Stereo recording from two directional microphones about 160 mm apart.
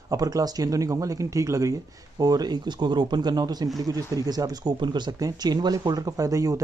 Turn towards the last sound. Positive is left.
turn(degrees=-20)  # may be behind; listen again after turning